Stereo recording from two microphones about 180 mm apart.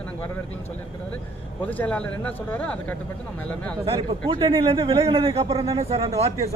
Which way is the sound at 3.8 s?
25° right (ahead or behind).